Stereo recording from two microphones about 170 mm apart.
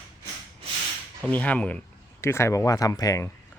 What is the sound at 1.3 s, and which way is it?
Speech, 10° left (ahead or behind).